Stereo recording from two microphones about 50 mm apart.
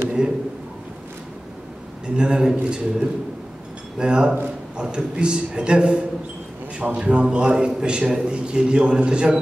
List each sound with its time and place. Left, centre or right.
0.2 s a man's voice: centre
2.1 s a man's voice: centre